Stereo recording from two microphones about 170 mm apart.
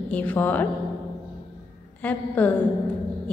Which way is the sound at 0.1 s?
10° left (ahead or behind).